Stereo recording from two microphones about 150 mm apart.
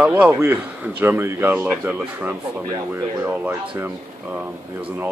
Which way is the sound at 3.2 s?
10° right (ahead or behind).